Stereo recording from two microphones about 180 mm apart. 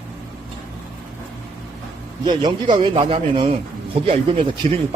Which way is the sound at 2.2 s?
25° right (ahead or behind).